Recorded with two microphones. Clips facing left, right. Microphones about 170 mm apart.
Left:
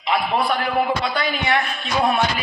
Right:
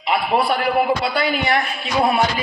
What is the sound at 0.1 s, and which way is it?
Speech, 30° right (ahead or behind).